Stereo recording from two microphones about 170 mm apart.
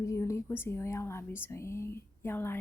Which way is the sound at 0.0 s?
15° left (ahead or behind).